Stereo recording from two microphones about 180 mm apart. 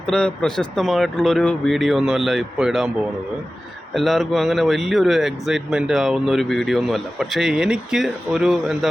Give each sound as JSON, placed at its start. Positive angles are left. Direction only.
{"t": 0.1, "sound": "speech", "side_deg": 5}
{"t": 3.9, "sound": "speech", "side_deg": 0}